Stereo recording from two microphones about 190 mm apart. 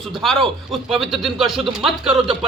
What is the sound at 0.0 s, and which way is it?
Speech, centre (ahead or behind).